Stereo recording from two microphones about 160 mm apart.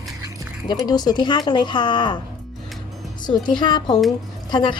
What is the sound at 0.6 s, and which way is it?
Speech, 25° left (ahead or behind).